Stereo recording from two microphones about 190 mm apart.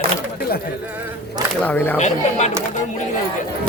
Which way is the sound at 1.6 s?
10° left (ahead or behind).